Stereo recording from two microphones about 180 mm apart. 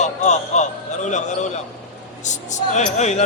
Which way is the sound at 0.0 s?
40° left (ahead or behind).